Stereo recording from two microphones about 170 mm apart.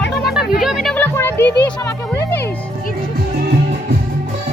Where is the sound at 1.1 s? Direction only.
15° left (ahead or behind).